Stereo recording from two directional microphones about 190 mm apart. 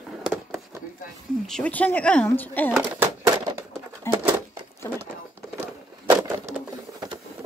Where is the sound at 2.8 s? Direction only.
15° right (ahead or behind).